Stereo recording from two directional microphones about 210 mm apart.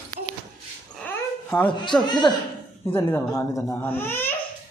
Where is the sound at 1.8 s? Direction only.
20° left (ahead or behind).